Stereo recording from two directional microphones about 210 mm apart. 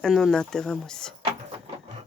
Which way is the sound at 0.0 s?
Centre (ahead or behind).